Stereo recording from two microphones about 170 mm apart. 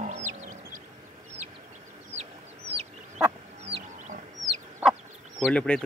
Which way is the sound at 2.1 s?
40° right (ahead or behind).